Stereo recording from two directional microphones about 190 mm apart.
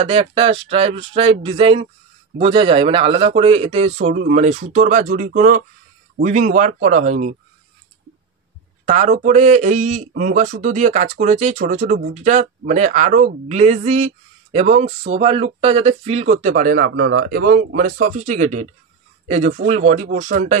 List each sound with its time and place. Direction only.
0.0 s speech: 30° right (ahead or behind)
8.8 s speech: 40° right (ahead or behind)